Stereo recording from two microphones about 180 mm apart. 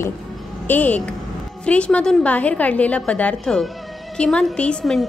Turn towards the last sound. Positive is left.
turn(degrees=0)  # may be behind; listen again after turning